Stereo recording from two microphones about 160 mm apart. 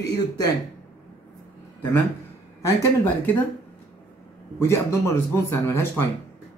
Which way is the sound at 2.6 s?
15° left (ahead or behind).